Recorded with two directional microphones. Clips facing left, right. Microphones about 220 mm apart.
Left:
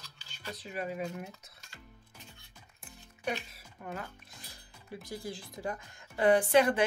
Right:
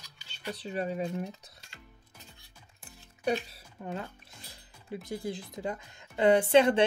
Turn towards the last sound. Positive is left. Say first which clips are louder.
# right 3 dB
turn(degrees=-25)  # may be behind; listen again after turning